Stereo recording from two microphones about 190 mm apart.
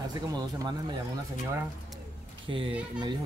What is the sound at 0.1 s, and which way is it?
Speech, 20° right (ahead or behind).